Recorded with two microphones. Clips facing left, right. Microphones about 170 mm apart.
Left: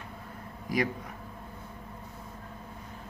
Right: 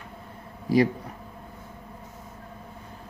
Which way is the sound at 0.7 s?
30° right (ahead or behind).